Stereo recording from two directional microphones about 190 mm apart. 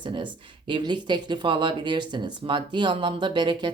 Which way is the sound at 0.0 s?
25° right (ahead or behind).